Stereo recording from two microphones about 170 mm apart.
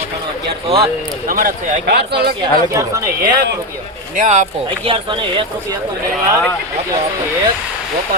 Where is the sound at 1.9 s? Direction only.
75° right (ahead or behind).